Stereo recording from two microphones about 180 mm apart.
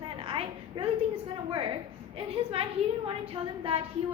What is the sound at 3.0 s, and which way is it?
Speech, 30° right (ahead or behind).